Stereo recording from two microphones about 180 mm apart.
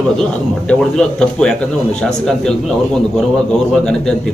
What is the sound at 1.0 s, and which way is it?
A man's voice, 5° left (ahead or behind).